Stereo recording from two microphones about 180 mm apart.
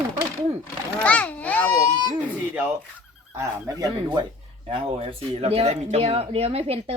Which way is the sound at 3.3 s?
20° right (ahead or behind).